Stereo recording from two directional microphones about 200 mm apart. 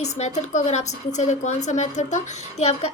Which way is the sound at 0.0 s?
35° left (ahead or behind).